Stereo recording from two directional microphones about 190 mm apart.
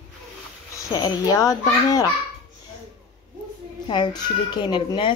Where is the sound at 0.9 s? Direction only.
20° left (ahead or behind).